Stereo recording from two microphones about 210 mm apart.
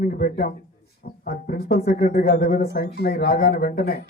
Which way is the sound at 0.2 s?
45° left (ahead or behind).